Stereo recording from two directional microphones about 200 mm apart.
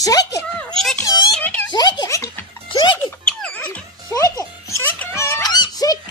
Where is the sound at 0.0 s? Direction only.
20° left (ahead or behind).